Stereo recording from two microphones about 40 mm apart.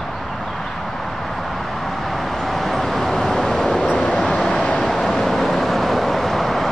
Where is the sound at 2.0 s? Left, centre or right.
Centre.